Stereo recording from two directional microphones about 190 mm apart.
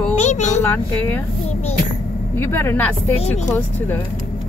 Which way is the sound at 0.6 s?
10° left (ahead or behind).